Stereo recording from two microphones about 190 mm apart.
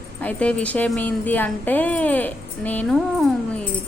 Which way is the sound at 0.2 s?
5° left (ahead or behind).